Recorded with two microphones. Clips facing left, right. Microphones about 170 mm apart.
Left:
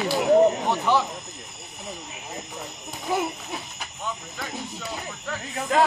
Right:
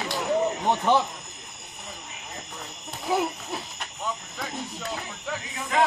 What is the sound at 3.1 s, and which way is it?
Speech, centre (ahead or behind).